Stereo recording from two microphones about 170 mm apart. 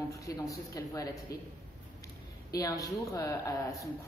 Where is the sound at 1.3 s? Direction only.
65° left (ahead or behind).